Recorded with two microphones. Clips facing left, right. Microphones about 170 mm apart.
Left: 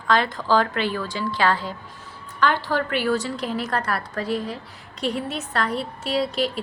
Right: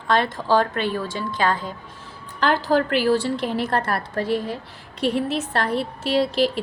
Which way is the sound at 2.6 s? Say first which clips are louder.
Right 4 dB; 30° right (ahead or behind).